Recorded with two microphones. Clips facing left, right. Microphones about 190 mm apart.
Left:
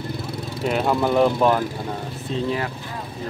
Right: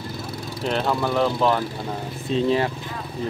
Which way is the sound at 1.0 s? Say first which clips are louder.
Left 4 dB; 20° left (ahead or behind).